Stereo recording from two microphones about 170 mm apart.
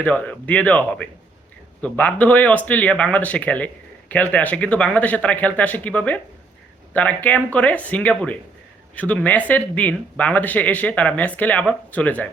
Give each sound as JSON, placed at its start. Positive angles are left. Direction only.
{"t": 0.0, "sound": "speech", "side_deg": 10}